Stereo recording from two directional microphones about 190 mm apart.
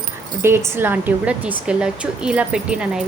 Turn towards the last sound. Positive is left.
turn(degrees=-5)  # may be behind; listen again after turning